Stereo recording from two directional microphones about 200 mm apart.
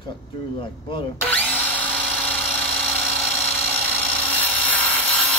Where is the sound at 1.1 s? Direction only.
10° left (ahead or behind).